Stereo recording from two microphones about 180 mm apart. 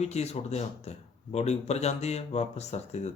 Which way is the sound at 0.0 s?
35° left (ahead or behind).